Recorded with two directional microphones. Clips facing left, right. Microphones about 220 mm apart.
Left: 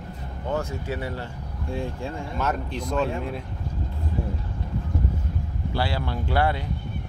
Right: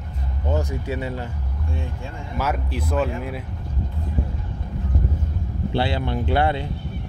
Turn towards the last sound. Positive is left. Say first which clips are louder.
# right 3 dB
turn(degrees=-20)  # may be behind; listen again after turning